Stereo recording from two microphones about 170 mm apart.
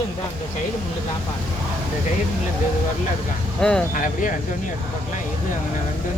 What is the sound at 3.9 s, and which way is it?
Speech, 50° left (ahead or behind).